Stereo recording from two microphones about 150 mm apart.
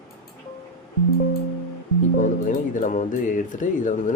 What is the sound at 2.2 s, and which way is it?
Speech, 60° left (ahead or behind).